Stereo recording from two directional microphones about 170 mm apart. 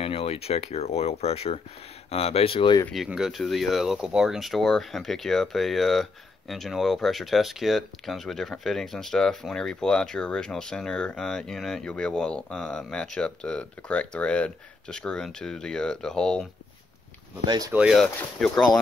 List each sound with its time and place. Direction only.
0.0 s speech: 35° left (ahead or behind)
2.9 s speech: centre (ahead or behind)
17.5 s speech: 20° right (ahead or behind)
17.7 s speech: 5° right (ahead or behind)